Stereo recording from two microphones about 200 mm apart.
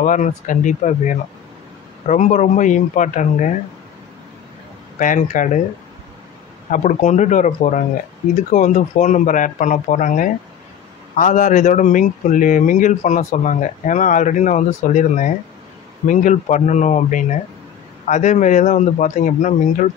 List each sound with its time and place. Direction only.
0.0 s speech: 40° left (ahead or behind)
4.9 s speech: 40° left (ahead or behind)
6.7 s speech: 35° left (ahead or behind)